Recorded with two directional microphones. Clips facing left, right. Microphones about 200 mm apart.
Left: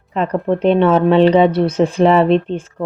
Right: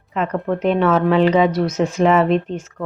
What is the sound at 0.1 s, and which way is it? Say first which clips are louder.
A woman's voice: left 4 dB; 35° left (ahead or behind).